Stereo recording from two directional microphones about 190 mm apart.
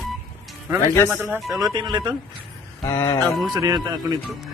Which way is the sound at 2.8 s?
15° left (ahead or behind).